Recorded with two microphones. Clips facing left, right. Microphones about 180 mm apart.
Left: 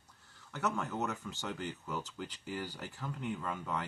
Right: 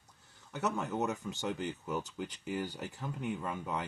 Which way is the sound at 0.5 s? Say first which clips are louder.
Right 1 dB; 15° right (ahead or behind).